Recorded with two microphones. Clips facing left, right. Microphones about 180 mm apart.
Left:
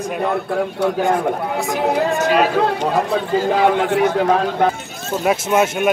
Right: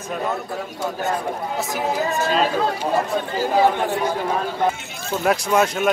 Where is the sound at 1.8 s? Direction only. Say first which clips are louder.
Left 5 dB; 65° left (ahead or behind).